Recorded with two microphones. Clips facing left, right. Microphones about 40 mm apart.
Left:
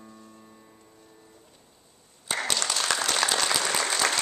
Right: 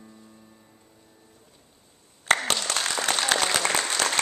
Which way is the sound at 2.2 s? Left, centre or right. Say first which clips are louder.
Right 6 dB; right.